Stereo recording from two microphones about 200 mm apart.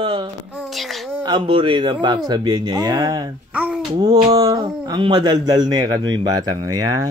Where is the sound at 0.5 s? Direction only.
Centre (ahead or behind).